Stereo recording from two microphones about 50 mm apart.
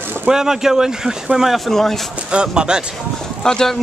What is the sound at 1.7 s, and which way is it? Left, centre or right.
Speech, centre.